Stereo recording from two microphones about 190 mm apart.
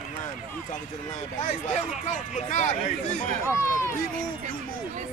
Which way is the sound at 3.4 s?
15° left (ahead or behind).